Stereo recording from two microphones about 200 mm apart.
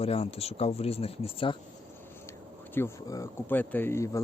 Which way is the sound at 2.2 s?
10° left (ahead or behind).